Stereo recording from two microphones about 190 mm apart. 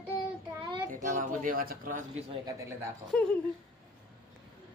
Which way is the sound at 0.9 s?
45° right (ahead or behind).